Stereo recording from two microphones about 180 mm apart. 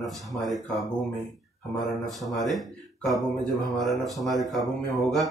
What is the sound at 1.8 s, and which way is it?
Speech, centre (ahead or behind).